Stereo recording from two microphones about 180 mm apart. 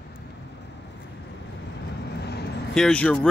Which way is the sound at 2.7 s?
5° left (ahead or behind).